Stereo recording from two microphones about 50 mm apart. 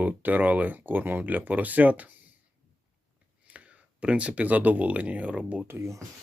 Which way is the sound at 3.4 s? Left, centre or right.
Right.